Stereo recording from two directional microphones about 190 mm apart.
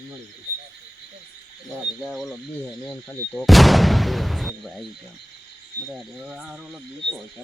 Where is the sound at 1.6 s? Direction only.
Centre (ahead or behind).